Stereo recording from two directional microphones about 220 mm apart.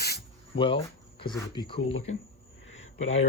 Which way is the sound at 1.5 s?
20° left (ahead or behind).